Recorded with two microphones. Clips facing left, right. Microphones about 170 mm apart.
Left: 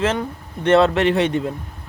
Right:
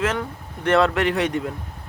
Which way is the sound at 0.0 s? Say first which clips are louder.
Left 3 dB; 25° left (ahead or behind).